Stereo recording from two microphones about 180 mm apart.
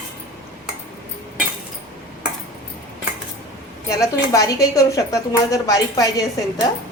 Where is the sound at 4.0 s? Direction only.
20° left (ahead or behind).